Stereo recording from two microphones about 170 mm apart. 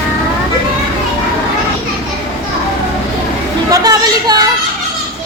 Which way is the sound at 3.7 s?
20° right (ahead or behind).